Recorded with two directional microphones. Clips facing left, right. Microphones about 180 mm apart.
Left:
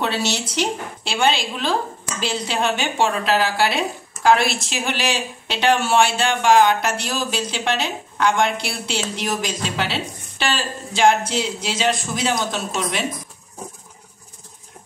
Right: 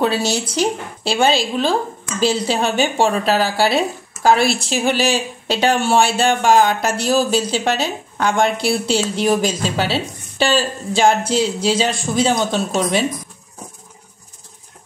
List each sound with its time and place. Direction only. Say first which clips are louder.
0.6 s speech: right 4 dB; 40° right (ahead or behind)